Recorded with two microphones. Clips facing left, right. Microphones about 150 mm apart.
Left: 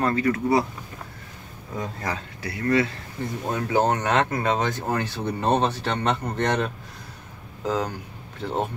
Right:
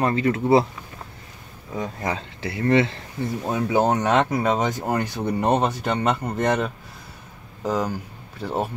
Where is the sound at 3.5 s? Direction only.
10° right (ahead or behind).